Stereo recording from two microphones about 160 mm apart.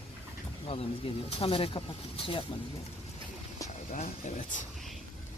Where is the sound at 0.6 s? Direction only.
40° left (ahead or behind).